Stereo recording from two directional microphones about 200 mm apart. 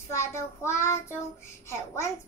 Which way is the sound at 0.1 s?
15° left (ahead or behind).